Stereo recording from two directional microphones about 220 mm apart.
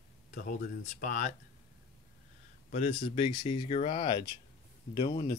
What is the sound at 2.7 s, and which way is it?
Speech, 25° left (ahead or behind).